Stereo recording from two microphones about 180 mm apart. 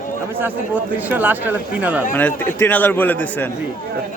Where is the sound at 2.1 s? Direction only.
10° left (ahead or behind).